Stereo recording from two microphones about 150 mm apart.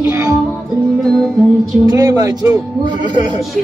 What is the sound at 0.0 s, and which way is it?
Music, 15° right (ahead or behind).